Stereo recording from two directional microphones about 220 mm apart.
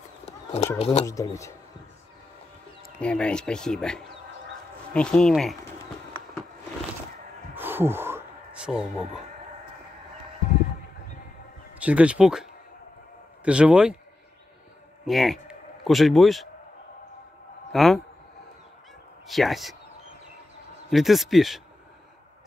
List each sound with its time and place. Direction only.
0.2 s a sound: 30° left (ahead or behind)
0.7 s speech: 25° left (ahead or behind)
1.0 s speech: 15° left (ahead or behind)
3.0 s speech: 5° left (ahead or behind)
7.5 s a sound: 10° right (ahead or behind)
11.8 s speech: 5° right (ahead or behind)
15.0 s a man's voice: centre (ahead or behind)
17.7 s speech: centre (ahead or behind)
19.2 s speech: centre (ahead or behind)
20.9 s speech: centre (ahead or behind)